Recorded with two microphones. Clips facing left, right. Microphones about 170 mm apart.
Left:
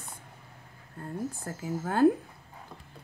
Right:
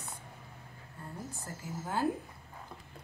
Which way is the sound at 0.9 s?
60° left (ahead or behind).